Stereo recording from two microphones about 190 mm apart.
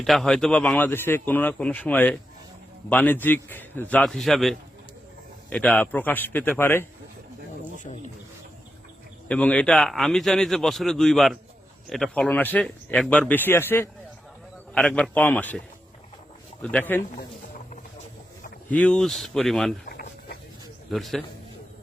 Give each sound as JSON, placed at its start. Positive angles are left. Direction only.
{"t": 0.0, "sound": "speech", "side_deg": 0}
{"t": 7.9, "sound": "speech", "side_deg": 40}
{"t": 9.3, "sound": "a man's voice", "side_deg": 5}
{"t": 16.7, "sound": "speech", "side_deg": 10}
{"t": 18.7, "sound": "a man's voice", "side_deg": 5}
{"t": 19.8, "sound": "a sound", "side_deg": 50}
{"t": 20.9, "sound": "a man's voice", "side_deg": 0}